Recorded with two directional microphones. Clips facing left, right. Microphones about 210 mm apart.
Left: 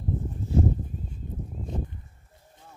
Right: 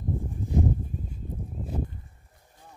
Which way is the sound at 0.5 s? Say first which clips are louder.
Left 2 dB; 15° right (ahead or behind).